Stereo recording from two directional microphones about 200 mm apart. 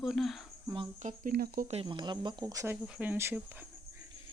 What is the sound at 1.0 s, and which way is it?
Speech, 45° right (ahead or behind).